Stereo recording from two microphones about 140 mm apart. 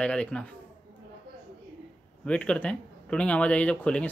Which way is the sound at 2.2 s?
10° left (ahead or behind).